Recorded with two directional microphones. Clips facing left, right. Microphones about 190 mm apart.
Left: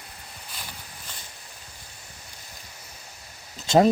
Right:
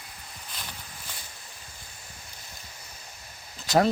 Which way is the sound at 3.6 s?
25° left (ahead or behind).